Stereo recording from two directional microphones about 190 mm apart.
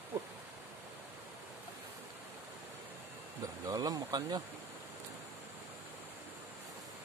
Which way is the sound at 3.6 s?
20° right (ahead or behind).